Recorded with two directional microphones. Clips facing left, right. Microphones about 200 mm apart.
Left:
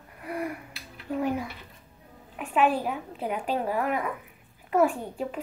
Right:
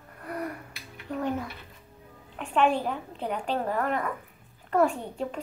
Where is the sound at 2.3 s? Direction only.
5° left (ahead or behind).